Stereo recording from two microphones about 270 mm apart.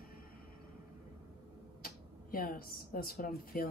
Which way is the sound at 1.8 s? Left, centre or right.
Left.